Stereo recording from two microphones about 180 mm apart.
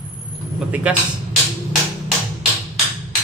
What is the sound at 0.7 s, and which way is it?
Speech, 5° right (ahead or behind).